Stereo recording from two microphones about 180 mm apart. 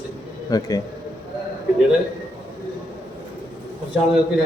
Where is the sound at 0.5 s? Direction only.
20° left (ahead or behind).